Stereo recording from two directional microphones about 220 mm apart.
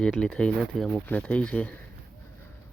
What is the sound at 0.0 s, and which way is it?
Speech, 5° left (ahead or behind).